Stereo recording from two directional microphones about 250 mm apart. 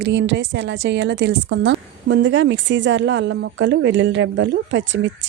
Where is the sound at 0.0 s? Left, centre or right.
Right.